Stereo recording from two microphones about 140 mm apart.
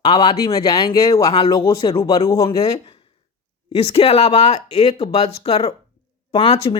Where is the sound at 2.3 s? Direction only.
25° left (ahead or behind).